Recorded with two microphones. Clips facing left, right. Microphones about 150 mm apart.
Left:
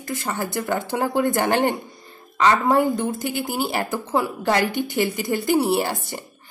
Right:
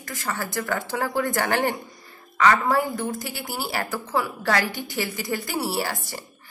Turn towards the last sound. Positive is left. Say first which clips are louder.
# left 5 dB
turn(degrees=20)  # may be behind; listen again after turning